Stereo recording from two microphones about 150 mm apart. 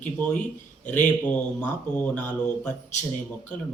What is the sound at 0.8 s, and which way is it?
Speech, 10° left (ahead or behind).